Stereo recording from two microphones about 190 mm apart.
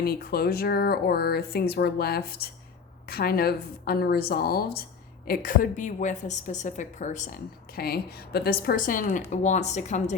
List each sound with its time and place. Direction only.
0.0 s a woman's voice: 55° left (ahead or behind)
7.8 s a woman's voice: 55° left (ahead or behind); by 10.2 s 35° left (ahead or behind)